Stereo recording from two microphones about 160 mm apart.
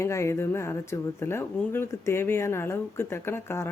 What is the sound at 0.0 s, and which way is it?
Speech, 15° left (ahead or behind).